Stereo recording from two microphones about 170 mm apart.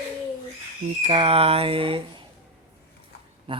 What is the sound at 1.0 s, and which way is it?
Speech, 35° right (ahead or behind).